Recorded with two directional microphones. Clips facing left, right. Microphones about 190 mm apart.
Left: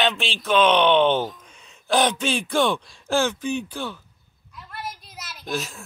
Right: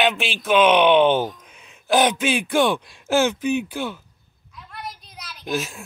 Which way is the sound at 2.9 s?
15° right (ahead or behind).